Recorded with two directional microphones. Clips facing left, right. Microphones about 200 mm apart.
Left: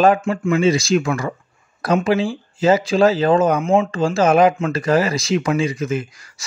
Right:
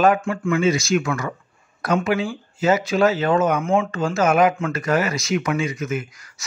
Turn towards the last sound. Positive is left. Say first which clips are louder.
# left 3 dB
turn(degrees=30)  # may be behind; listen again after turning